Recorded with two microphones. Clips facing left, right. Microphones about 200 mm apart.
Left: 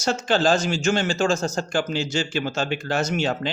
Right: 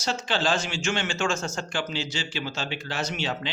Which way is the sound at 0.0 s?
45° left (ahead or behind).